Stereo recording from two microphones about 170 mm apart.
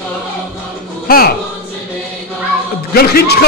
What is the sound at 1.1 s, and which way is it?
Speech, 60° left (ahead or behind).